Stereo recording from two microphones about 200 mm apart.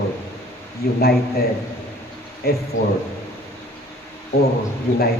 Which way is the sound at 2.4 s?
50° left (ahead or behind).